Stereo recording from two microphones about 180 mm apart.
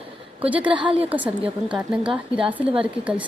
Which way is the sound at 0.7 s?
30° right (ahead or behind).